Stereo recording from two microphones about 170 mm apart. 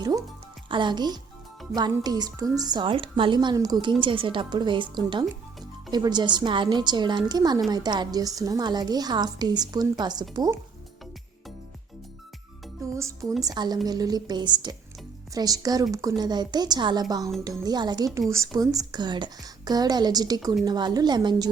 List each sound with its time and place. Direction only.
0.0 s a woman's voice: 20° right (ahead or behind)
13.4 s a woman's voice: 25° right (ahead or behind)